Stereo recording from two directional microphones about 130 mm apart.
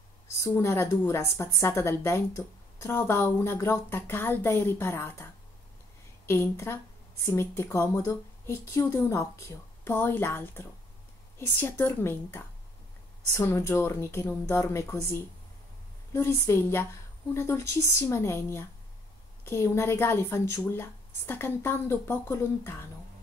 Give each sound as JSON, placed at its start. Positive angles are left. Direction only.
{"t": 0.4, "sound": "speech", "side_deg": 20}